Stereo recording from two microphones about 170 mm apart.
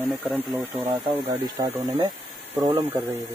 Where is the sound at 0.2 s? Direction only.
10° right (ahead or behind).